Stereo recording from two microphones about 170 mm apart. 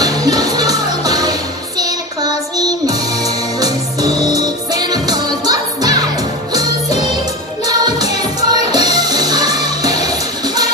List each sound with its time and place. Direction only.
0.0 s music: 20° right (ahead or behind)
1.8 s child singing: 20° right (ahead or behind)
3.5 s music: 20° right (ahead or behind)
7.6 s music: 25° right (ahead or behind)